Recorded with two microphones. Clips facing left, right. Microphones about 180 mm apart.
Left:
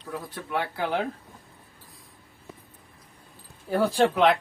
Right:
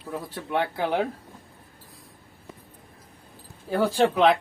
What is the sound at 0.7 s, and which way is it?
Speech, 15° right (ahead or behind).